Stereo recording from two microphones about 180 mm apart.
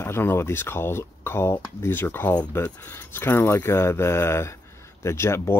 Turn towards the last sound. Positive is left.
turn(degrees=15)  # may be behind; listen again after turning